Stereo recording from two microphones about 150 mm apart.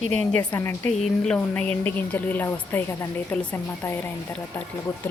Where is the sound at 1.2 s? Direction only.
10° left (ahead or behind).